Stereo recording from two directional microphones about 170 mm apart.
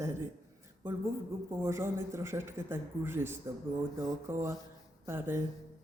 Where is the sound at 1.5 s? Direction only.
15° right (ahead or behind).